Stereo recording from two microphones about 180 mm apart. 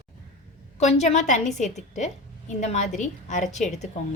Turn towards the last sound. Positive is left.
turn(degrees=40)  # may be behind; listen again after turning